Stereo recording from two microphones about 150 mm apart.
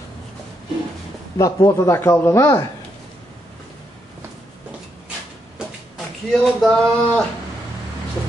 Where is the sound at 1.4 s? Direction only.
20° left (ahead or behind).